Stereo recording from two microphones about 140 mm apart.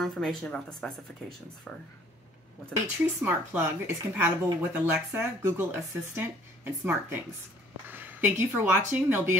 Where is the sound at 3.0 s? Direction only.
15° right (ahead or behind).